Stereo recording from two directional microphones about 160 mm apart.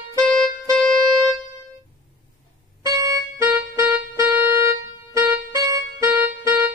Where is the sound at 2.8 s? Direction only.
20° right (ahead or behind).